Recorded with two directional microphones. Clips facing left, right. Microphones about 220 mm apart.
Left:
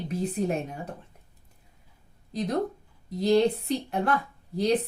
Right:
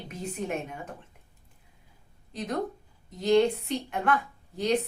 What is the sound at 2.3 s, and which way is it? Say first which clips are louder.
A woman's voice: left 4 dB; 35° left (ahead or behind).